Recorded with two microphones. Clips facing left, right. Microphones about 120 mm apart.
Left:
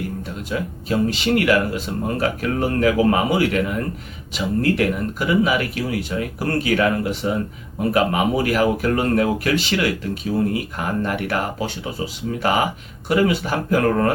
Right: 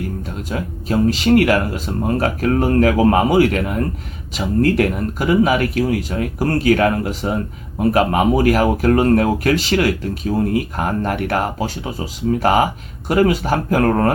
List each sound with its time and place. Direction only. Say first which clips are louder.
0.5 s speech: right 2 dB; 40° right (ahead or behind)
13.1 s speech: right 3 dB; 45° right (ahead or behind)